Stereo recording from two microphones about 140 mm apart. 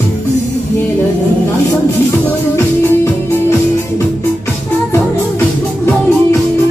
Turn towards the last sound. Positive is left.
turn(degrees=15)  # may be behind; listen again after turning